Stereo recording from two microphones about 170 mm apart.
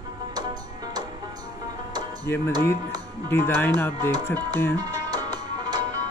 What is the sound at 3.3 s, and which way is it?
Speech, 15° left (ahead or behind).